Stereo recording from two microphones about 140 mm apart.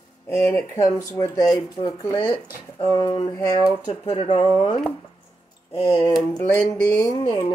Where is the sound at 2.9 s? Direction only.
35° left (ahead or behind).